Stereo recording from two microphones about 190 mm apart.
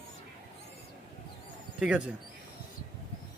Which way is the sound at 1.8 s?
5° right (ahead or behind).